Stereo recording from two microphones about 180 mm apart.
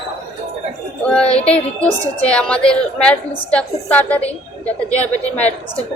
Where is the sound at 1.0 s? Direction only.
5° left (ahead or behind).